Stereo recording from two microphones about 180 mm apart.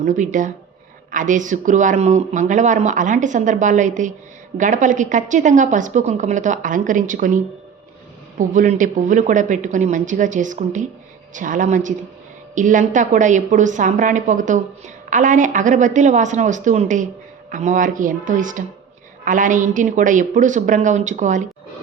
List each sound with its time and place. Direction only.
0.0 s speech: 45° right (ahead or behind)
8.4 s speech: 45° right (ahead or behind)